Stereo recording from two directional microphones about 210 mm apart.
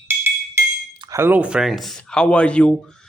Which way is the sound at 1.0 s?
15° right (ahead or behind).